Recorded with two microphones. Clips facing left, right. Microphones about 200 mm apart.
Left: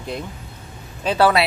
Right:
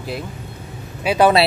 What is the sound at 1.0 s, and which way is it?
Speech, 15° right (ahead or behind).